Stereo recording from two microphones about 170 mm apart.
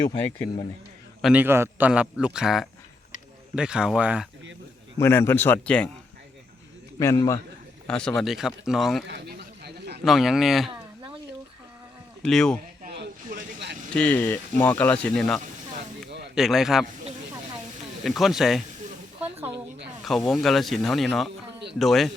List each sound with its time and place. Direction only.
1.2 s a man's voice: 10° right (ahead or behind)
4.9 s speech: 15° left (ahead or behind)
7.0 s a man's voice: 20° left (ahead or behind)
7.9 s speech: 5° left (ahead or behind)
9.0 s a sound: 85° right
10.0 s speech: centre (ahead or behind)
12.2 s speech: 5° left (ahead or behind)
12.9 s vehicle: 85° right
13.9 s speech: 10° left (ahead or behind)
18.0 s speech: centre (ahead or behind)
19.2 s a sound: 10° right (ahead or behind)
20.1 s speech: centre (ahead or behind)